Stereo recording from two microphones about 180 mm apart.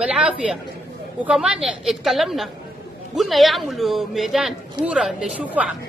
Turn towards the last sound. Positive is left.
turn(degrees=-5)  # may be behind; listen again after turning